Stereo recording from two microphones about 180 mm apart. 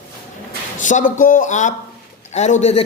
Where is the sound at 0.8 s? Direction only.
45° left (ahead or behind).